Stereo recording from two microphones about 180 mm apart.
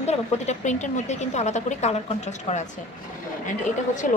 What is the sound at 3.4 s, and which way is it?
Speech, 45° left (ahead or behind).